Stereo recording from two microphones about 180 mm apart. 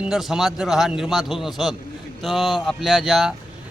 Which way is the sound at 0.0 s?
Centre (ahead or behind).